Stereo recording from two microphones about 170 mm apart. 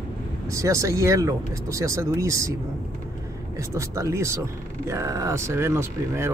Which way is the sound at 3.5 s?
20° right (ahead or behind).